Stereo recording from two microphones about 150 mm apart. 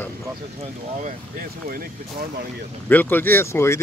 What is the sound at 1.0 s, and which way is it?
Speech, 70° right (ahead or behind).